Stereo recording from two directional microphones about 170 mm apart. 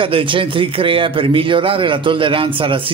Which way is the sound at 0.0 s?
30° right (ahead or behind).